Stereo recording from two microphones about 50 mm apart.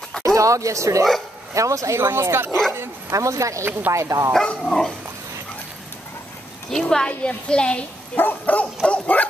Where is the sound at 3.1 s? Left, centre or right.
Right.